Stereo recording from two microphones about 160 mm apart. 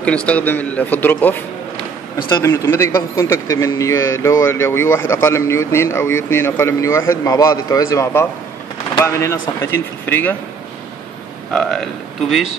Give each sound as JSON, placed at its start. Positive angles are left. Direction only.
{"t": 0.0, "sound": "a man's voice", "side_deg": 5}
{"t": 2.4, "sound": "a man's voice", "side_deg": 15}
{"t": 11.5, "sound": "speech", "side_deg": 0}